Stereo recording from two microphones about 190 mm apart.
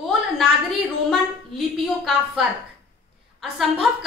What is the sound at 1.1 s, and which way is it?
A woman's voice, centre (ahead or behind).